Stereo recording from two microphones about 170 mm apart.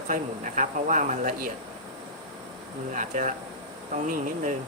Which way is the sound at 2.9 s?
50° right (ahead or behind).